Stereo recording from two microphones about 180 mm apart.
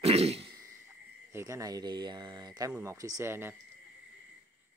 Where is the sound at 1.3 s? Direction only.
15° right (ahead or behind).